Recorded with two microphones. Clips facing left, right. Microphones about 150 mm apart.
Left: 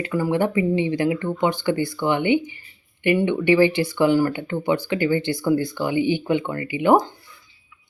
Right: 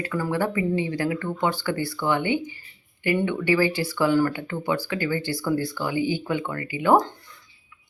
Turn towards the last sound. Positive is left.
turn(degrees=15)  # may be behind; listen again after turning